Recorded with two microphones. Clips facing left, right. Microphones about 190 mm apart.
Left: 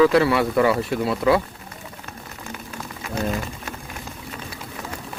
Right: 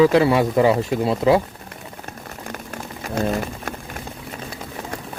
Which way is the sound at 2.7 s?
50° right (ahead or behind).